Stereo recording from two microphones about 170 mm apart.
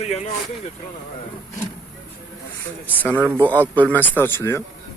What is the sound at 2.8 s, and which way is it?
Speech, 10° left (ahead or behind).